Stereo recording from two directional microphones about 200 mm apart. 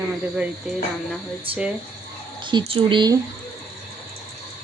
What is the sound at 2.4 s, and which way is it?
Speech, 25° right (ahead or behind).